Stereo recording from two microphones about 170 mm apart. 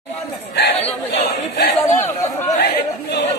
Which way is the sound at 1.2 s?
35° left (ahead or behind).